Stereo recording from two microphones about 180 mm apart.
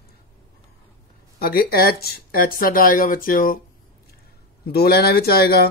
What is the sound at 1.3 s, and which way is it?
Speech, 55° left (ahead or behind).